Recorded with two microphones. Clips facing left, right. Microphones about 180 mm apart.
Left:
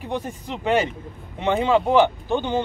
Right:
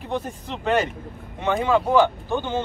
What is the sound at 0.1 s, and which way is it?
Speech, 15° left (ahead or behind).